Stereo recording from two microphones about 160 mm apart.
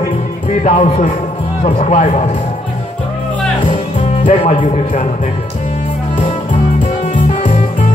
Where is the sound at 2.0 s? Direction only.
50° left (ahead or behind).